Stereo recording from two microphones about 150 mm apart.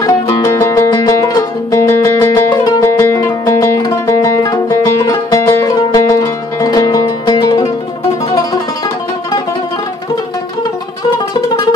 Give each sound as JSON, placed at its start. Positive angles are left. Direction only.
{"t": 0.0, "sound": "music", "side_deg": 20}